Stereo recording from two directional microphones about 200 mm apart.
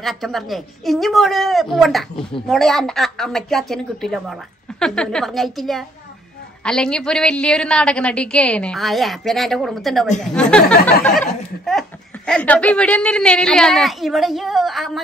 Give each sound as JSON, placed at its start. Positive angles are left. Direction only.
{"t": 0.0, "sound": "a woman's voice", "side_deg": 0}